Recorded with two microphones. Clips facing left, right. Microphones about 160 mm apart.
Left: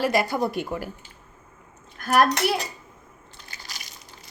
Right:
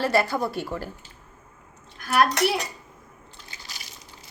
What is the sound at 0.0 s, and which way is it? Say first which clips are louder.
Speech: even; 15° left (ahead or behind).